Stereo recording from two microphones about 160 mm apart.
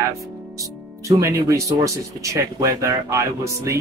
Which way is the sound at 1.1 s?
20° right (ahead or behind).